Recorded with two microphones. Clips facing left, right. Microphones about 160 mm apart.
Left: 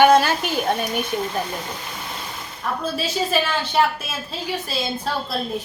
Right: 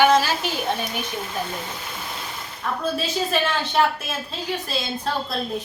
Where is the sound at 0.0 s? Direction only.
55° left (ahead or behind).